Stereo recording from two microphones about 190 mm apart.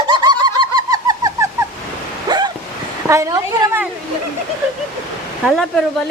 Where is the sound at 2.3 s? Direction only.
20° right (ahead or behind).